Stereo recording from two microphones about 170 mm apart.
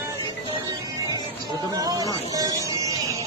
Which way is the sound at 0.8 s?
20° right (ahead or behind).